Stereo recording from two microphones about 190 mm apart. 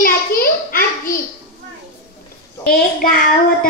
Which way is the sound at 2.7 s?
50° left (ahead or behind).